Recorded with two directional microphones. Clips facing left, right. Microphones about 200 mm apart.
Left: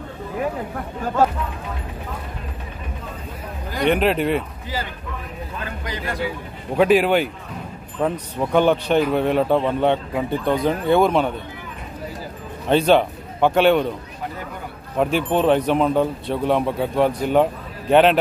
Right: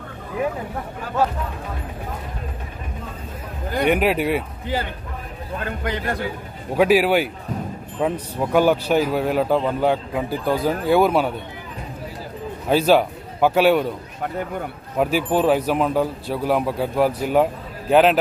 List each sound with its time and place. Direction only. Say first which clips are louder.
3.8 s speech: left 1 dB; 10° right (ahead or behind)
5.6 s a man's voice: right 5 dB; 55° right (ahead or behind)
6.8 s a man's voice: even; 5° right (ahead or behind)
12.6 s a man's voice: left 1 dB; 5° right (ahead or behind)
15.0 s a man's voice: even; 5° right (ahead or behind)